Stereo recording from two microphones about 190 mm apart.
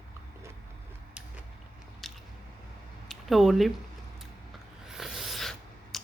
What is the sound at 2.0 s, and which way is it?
Biting, centre (ahead or behind).